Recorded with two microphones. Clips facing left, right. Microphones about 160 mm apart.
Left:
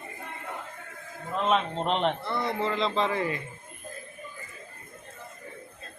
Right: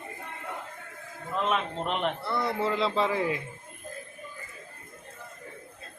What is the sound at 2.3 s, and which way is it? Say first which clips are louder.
Speech: right 1 dB; 5° right (ahead or behind).